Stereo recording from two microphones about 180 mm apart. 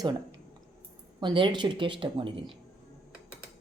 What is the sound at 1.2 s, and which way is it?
Speech, 25° right (ahead or behind).